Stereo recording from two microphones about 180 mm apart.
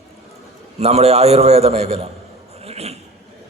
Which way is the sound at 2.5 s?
35° right (ahead or behind).